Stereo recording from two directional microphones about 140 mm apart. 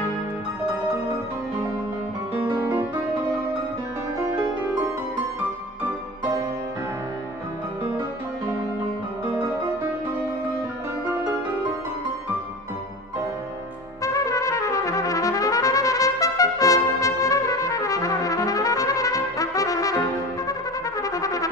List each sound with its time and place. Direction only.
14.0 s trumpet: 25° left (ahead or behind)
21.0 s brass instrument: 25° left (ahead or behind)